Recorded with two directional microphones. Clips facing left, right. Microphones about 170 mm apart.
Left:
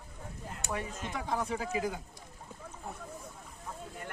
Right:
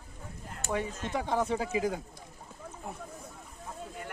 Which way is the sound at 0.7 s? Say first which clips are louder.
Right 5 dB; 30° right (ahead or behind).